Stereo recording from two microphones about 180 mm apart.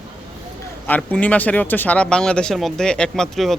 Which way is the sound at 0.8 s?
10° left (ahead or behind).